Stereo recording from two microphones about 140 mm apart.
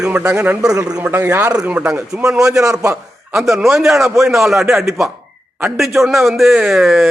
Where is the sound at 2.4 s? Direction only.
20° right (ahead or behind).